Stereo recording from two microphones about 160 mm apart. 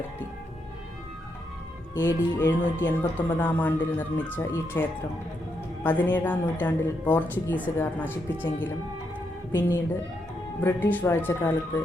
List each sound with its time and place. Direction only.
2.0 s speech: 15° left (ahead or behind)
9.5 s speech: 15° left (ahead or behind)